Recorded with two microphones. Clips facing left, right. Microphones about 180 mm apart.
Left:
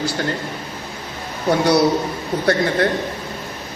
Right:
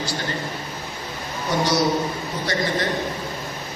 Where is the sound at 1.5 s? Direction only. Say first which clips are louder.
Left 6 dB; 60° left (ahead or behind).